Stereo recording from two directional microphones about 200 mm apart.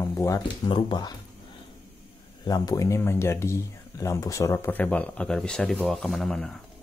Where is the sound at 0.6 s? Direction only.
25° left (ahead or behind).